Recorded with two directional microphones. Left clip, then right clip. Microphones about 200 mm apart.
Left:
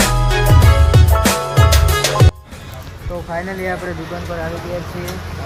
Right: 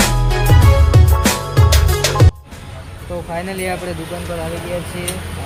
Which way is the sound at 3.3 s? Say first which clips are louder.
Left 1 dB; 30° right (ahead or behind).